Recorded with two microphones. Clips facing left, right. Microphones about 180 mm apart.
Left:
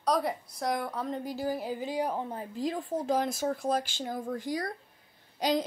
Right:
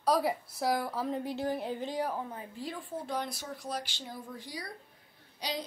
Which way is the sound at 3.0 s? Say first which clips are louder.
Left 8 dB; 90° left.